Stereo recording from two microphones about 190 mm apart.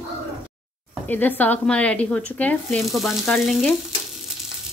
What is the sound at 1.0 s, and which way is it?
Speech, 10° left (ahead or behind).